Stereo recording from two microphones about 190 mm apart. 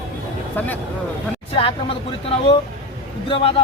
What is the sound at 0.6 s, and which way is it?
Speech, 10° left (ahead or behind).